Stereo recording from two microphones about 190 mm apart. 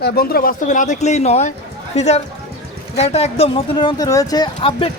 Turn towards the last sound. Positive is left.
turn(degrees=25)  # may be behind; listen again after turning